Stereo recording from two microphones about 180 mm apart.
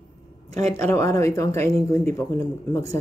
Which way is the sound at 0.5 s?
15° left (ahead or behind).